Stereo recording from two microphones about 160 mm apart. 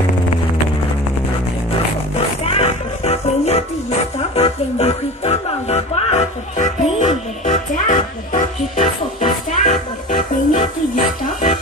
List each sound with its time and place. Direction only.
2.4 s music: 40° left (ahead or behind)